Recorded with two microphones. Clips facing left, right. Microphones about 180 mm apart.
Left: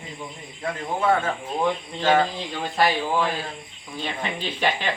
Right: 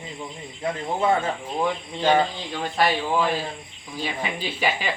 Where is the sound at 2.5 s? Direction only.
Centre (ahead or behind).